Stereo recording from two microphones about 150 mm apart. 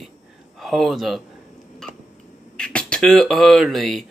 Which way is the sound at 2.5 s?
5° left (ahead or behind).